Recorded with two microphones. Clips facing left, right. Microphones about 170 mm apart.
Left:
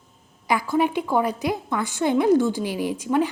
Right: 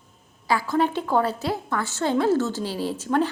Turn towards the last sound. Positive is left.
turn(degrees=10)  # may be behind; listen again after turning